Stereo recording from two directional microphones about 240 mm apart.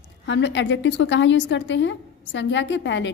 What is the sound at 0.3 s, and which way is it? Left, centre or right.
A woman's voice, left.